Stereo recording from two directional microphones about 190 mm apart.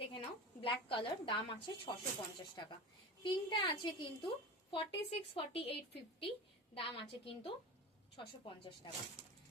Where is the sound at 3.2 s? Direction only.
25° left (ahead or behind).